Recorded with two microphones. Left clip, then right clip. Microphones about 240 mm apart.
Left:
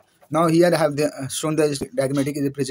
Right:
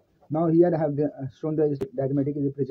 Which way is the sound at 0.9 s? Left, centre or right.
Left.